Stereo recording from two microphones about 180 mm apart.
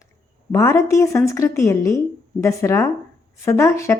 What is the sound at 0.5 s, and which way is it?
A woman's voice, 15° left (ahead or behind).